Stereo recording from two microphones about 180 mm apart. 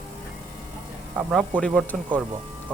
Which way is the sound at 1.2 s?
5° right (ahead or behind).